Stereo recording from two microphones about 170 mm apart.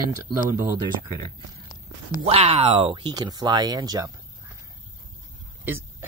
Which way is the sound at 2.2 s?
35° right (ahead or behind).